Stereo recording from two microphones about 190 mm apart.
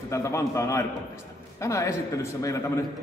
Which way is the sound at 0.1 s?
15° left (ahead or behind).